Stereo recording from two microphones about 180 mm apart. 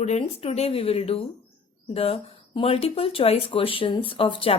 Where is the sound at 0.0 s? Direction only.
35° left (ahead or behind).